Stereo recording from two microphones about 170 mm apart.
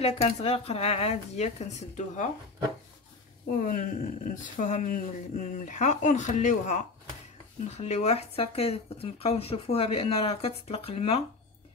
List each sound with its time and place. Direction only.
0.0 s speech: 40° left (ahead or behind)
3.6 s speech: 55° left (ahead or behind); by 11.2 s 35° left (ahead or behind)